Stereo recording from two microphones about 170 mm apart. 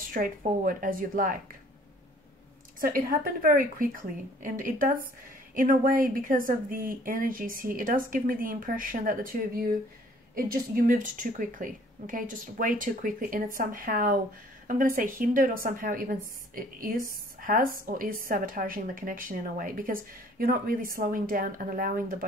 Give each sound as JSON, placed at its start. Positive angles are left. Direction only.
{"t": 0.1, "sound": "a woman's voice", "side_deg": -55}
{"t": 2.8, "sound": "a woman's voice", "side_deg": -55}